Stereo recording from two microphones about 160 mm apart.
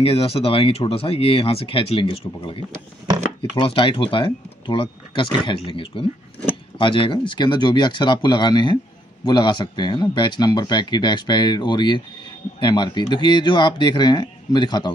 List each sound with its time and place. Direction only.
0.0 s speech: 35° left (ahead or behind)